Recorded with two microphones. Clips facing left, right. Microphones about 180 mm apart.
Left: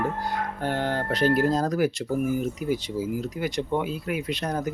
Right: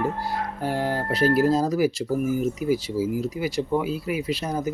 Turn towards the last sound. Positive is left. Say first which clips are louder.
# right 2 dB
turn(degrees=-5)  # may be behind; listen again after turning